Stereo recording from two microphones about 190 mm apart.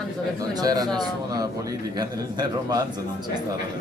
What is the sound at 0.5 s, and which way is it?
A man's voice, 20° right (ahead or behind).